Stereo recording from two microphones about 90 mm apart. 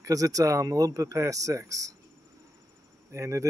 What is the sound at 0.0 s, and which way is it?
Speech, 40° right (ahead or behind).